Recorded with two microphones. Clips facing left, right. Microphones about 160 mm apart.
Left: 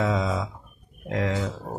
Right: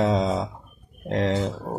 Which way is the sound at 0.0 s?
30° right (ahead or behind).